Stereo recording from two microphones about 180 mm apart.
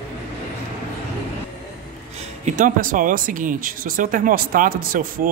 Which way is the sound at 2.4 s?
45° right (ahead or behind).